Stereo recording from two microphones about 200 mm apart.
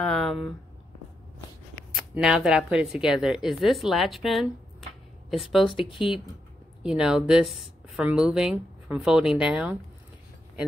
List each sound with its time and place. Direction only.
0.0 s speech: 5° left (ahead or behind)
1.9 s speech: 5° right (ahead or behind)
5.9 s speech: 25° left (ahead or behind)
6.8 s speech: 5° right (ahead or behind)